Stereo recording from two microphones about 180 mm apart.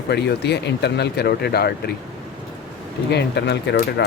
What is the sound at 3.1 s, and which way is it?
Speech, 70° left (ahead or behind).